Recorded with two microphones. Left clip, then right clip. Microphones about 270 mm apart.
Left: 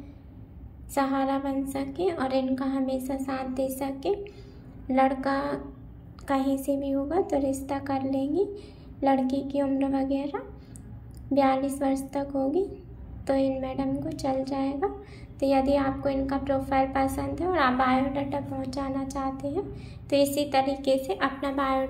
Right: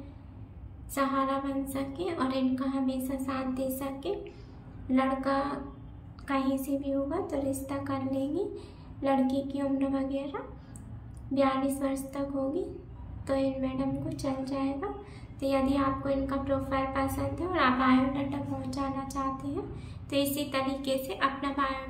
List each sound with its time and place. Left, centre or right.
0.9 s a woman's voice: centre